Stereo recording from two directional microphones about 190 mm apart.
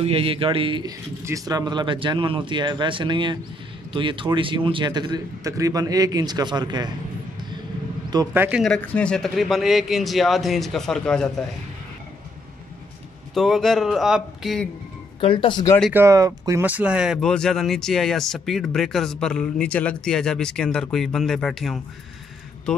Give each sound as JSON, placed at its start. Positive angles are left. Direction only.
{"t": 0.0, "sound": "speech", "side_deg": -30}
{"t": 8.1, "sound": "speech", "side_deg": -15}
{"t": 8.6, "sound": "speech", "side_deg": 5}
{"t": 13.3, "sound": "speech", "side_deg": 0}
{"t": 15.1, "sound": "speech", "side_deg": 25}
{"t": 15.9, "sound": "speech", "side_deg": -15}